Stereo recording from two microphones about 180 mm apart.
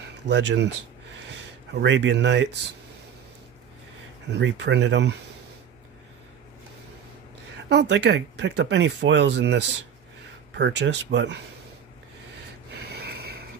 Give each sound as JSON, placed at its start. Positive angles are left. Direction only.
{"t": 0.3, "sound": "speech", "side_deg": -75}
{"t": 1.7, "sound": "speech", "side_deg": -75}
{"t": 4.3, "sound": "speech", "side_deg": -75}
{"t": 7.7, "sound": "speech", "side_deg": -70}